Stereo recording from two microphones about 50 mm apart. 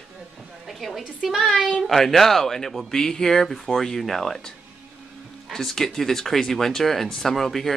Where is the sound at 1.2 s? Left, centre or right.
Centre.